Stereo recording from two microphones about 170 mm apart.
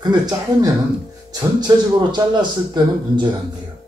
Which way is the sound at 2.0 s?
25° right (ahead or behind).